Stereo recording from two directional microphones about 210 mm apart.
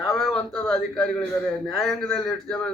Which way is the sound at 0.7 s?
Centre (ahead or behind).